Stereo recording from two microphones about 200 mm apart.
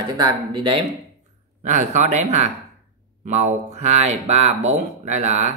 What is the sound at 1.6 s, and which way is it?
Speech, 35° right (ahead or behind).